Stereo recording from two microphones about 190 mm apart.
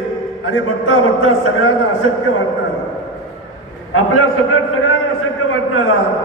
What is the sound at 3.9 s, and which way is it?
A man's voice, 90° left.